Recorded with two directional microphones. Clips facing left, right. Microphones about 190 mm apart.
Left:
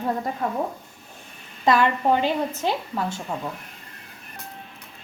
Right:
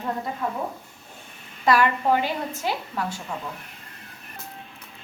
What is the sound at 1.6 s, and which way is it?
A woman's voice, 25° left (ahead or behind).